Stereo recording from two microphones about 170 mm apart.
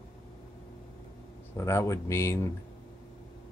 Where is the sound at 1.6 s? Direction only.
15° left (ahead or behind).